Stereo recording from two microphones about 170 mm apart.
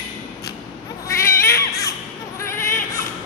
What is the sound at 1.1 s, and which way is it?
Baby cry, 15° left (ahead or behind).